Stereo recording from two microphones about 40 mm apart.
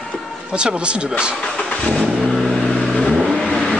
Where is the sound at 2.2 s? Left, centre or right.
Centre.